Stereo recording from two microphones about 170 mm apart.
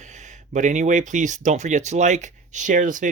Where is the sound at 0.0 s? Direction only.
45° right (ahead or behind).